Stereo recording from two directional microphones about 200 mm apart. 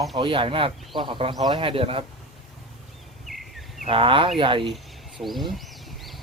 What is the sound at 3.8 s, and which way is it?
Speech, 25° right (ahead or behind).